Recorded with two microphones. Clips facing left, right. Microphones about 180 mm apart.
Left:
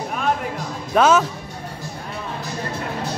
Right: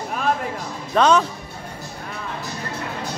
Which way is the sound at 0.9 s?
5° left (ahead or behind).